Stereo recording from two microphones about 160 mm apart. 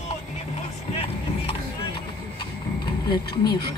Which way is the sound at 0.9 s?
35° left (ahead or behind).